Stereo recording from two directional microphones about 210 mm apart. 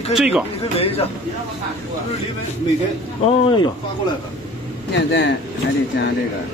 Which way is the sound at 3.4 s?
25° left (ahead or behind).